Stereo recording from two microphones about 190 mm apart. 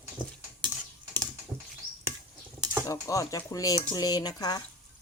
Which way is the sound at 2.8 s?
15° left (ahead or behind).